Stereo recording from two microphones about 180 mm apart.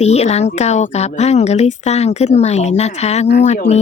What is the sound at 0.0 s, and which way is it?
Speech, 35° left (ahead or behind).